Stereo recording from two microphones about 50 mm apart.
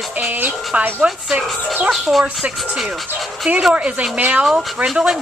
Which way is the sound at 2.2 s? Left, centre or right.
Right.